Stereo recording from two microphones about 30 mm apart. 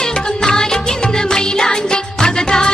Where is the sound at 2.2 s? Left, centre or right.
Left.